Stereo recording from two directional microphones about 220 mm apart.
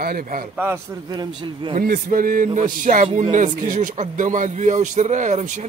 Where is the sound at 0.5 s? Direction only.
10° right (ahead or behind).